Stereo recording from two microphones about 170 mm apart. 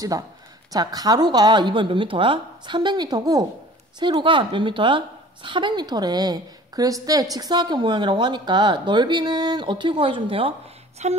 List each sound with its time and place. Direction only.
0.7 s a woman's voice: 20° right (ahead or behind)
11.0 s busy signal: 40° right (ahead or behind)